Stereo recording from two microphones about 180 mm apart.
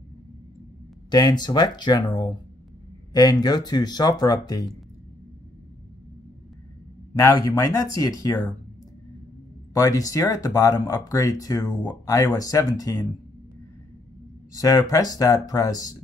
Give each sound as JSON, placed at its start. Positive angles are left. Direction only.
{"t": 1.1, "sound": "speech", "side_deg": 20}
{"t": 7.2, "sound": "speech", "side_deg": 20}
{"t": 9.8, "sound": "speech", "side_deg": 20}
{"t": 14.5, "sound": "speech", "side_deg": 20}